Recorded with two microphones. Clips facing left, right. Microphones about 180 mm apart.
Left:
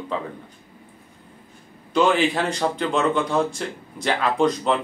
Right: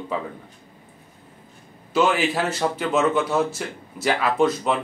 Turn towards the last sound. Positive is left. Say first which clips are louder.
# even
turn(degrees=-5)  # may be behind; listen again after turning